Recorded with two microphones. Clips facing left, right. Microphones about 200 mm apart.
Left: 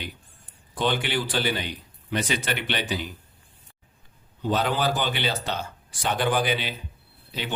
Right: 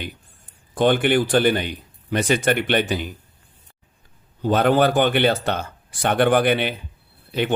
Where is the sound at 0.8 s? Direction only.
50° right (ahead or behind).